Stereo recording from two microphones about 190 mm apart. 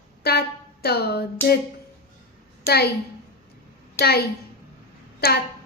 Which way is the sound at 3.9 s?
55° left (ahead or behind).